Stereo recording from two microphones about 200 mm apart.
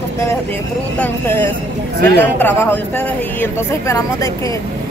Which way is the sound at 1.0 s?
10° left (ahead or behind).